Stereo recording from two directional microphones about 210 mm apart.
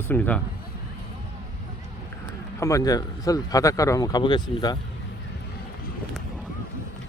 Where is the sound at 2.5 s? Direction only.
15° left (ahead or behind).